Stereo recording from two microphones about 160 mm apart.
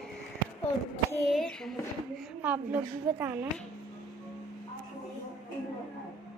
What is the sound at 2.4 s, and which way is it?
A woman's voice, 10° right (ahead or behind).